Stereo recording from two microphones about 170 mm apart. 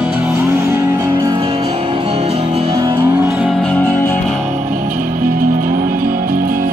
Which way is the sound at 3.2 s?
5° right (ahead or behind).